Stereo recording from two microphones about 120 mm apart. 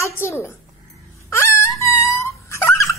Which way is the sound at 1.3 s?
25° left (ahead or behind).